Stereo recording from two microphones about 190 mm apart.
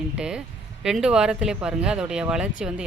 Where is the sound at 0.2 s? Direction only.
5° right (ahead or behind).